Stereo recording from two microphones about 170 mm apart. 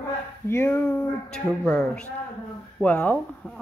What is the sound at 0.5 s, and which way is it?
Speech, 15° left (ahead or behind).